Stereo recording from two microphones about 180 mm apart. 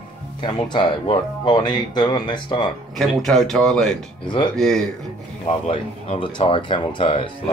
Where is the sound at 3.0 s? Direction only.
Centre (ahead or behind).